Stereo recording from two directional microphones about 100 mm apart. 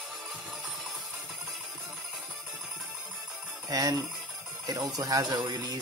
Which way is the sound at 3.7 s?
35° right (ahead or behind).